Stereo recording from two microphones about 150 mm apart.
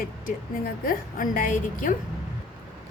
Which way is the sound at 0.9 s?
65° left (ahead or behind).